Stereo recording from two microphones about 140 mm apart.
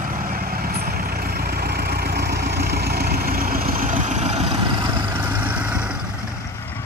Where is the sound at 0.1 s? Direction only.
90° right; by 4.6 s 50° right (ahead or behind).